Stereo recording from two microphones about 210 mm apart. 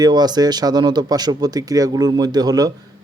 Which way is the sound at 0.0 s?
20° right (ahead or behind).